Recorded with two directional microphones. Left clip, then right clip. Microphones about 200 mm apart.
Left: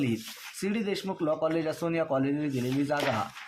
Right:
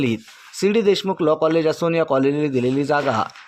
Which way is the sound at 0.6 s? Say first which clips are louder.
Right 15 dB; 45° right (ahead or behind).